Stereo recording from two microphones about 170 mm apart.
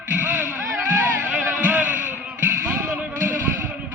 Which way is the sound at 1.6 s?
10° right (ahead or behind).